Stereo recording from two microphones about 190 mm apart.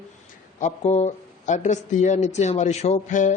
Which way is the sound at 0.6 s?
35° left (ahead or behind).